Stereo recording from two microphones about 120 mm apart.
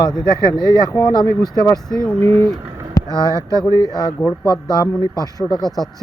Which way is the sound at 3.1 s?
30° right (ahead or behind).